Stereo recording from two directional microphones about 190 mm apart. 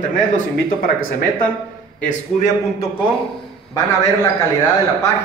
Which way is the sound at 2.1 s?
40° left (ahead or behind).